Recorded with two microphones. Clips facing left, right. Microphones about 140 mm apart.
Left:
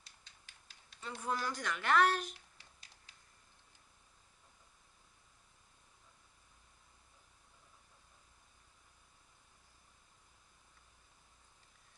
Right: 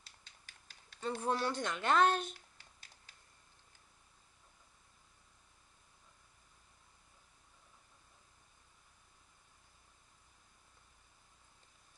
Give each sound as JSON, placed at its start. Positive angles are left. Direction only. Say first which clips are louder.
{"t": 1.0, "sound": "speech", "louder": "right 4 dB", "side_deg": -35}